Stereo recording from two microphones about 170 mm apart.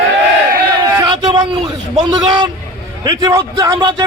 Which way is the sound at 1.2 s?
25° right (ahead or behind).